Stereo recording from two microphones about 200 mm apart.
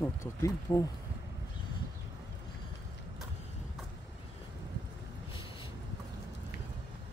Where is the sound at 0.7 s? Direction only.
15° left (ahead or behind).